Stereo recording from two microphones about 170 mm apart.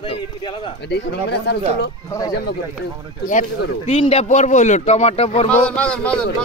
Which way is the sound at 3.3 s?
45° left (ahead or behind).